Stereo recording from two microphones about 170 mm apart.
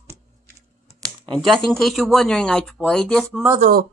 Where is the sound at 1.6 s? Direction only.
Centre (ahead or behind).